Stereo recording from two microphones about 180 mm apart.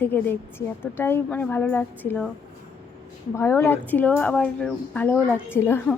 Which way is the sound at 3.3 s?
15° left (ahead or behind).